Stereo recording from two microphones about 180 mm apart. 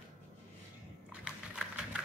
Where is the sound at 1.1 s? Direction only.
5° right (ahead or behind).